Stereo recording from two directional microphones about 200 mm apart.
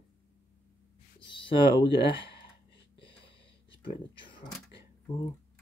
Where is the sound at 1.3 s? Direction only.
25° left (ahead or behind).